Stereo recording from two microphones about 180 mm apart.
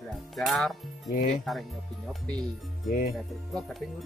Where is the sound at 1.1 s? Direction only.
50° left (ahead or behind).